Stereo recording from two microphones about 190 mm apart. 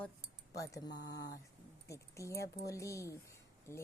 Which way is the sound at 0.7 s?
20° left (ahead or behind).